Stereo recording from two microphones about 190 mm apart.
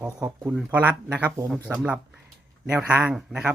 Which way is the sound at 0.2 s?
20° right (ahead or behind).